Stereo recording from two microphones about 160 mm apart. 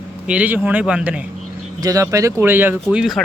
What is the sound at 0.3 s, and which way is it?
Speech, 10° right (ahead or behind).